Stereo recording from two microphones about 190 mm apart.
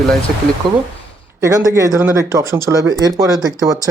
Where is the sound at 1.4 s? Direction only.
15° right (ahead or behind).